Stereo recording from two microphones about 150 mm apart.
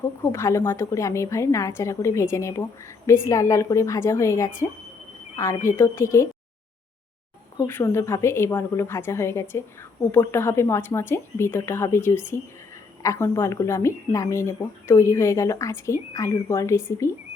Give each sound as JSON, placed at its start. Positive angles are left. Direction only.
{"t": 0.2, "sound": "a woman's voice", "side_deg": 15}
{"t": 7.7, "sound": "a woman's voice", "side_deg": 15}